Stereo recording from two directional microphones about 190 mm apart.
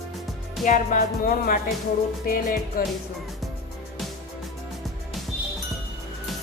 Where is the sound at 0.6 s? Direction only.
40° left (ahead or behind).